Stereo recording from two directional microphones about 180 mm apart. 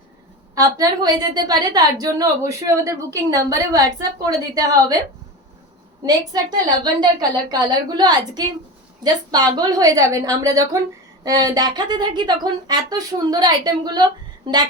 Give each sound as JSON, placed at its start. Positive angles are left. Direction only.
{"t": 0.5, "sound": "a woman's voice", "side_deg": -20}
{"t": 6.8, "sound": "a woman's voice", "side_deg": -20}